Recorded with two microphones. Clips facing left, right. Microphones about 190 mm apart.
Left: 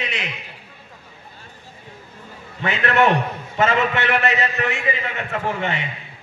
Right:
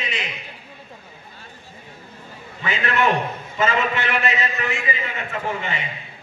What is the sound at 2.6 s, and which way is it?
A man's voice, 65° left (ahead or behind).